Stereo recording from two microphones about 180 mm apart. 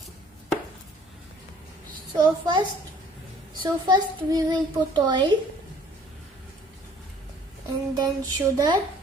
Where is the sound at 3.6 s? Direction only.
20° right (ahead or behind).